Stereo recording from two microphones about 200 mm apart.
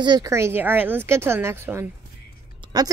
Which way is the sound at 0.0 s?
20° right (ahead or behind).